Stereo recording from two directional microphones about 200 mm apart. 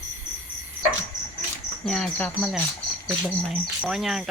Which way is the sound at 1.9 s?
5° left (ahead or behind).